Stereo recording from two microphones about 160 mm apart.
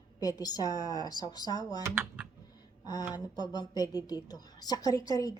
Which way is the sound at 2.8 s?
25° left (ahead or behind).